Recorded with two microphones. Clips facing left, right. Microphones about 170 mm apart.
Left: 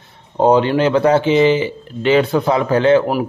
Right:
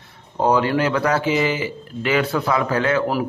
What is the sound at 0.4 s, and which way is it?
Speech, 25° left (ahead or behind).